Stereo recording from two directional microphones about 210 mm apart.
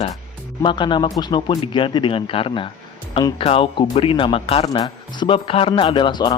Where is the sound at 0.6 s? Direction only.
20° left (ahead or behind).